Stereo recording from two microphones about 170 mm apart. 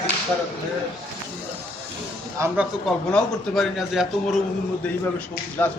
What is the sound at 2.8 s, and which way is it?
A man's voice, 5° left (ahead or behind).